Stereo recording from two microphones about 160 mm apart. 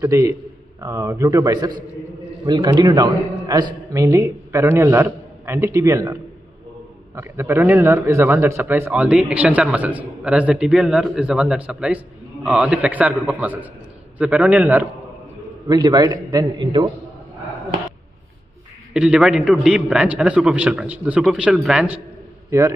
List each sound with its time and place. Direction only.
0.0 s a man's voice: 20° right (ahead or behind)
7.2 s a man's voice: 15° right (ahead or behind)
15.7 s a man's voice: 25° right (ahead or behind)
18.9 s a man's voice: 5° right (ahead or behind)
22.5 s a man's voice: 20° right (ahead or behind)